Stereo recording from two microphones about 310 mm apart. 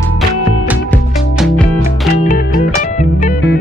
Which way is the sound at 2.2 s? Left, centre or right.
Left.